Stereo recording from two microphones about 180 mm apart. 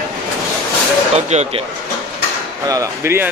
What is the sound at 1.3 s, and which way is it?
Speech, 40° right (ahead or behind).